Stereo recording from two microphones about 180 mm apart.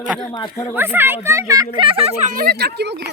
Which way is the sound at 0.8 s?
10° right (ahead or behind).